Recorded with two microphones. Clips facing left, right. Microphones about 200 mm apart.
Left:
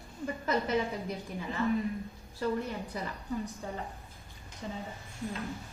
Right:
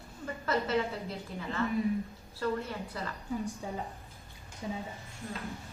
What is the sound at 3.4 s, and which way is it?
A woman's voice, 10° right (ahead or behind).